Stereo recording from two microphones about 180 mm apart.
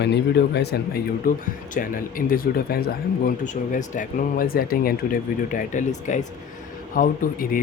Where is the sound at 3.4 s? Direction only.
45° left (ahead or behind).